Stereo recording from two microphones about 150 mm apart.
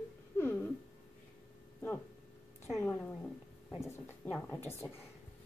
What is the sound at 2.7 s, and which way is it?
Speech, 15° left (ahead or behind).